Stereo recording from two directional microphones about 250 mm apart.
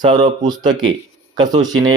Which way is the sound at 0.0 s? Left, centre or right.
Centre.